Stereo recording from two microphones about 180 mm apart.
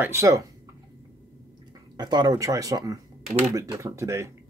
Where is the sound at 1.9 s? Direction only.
25° right (ahead or behind).